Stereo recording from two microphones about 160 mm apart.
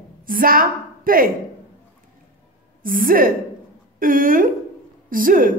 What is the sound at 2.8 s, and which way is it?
A woman's voice, 60° right (ahead or behind).